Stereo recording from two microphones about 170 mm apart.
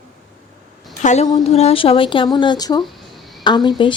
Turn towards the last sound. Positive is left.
turn(degrees=30)  # may be behind; listen again after turning